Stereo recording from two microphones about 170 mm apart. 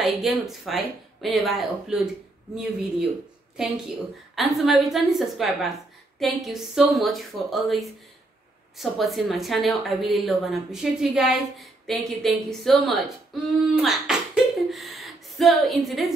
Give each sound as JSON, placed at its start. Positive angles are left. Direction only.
{"t": 0.0, "sound": "speech", "side_deg": 0}
{"t": 4.4, "sound": "speech", "side_deg": 0}
{"t": 13.8, "sound": "a sound", "side_deg": -5}